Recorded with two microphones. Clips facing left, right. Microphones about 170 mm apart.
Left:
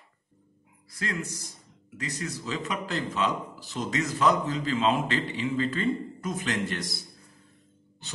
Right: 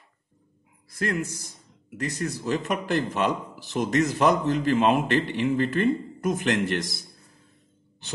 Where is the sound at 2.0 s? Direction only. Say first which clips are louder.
Right 5 dB; 50° right (ahead or behind).